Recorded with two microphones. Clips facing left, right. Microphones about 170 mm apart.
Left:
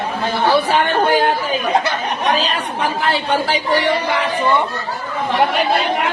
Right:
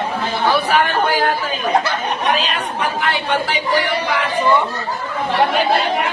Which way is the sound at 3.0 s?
30° left (ahead or behind).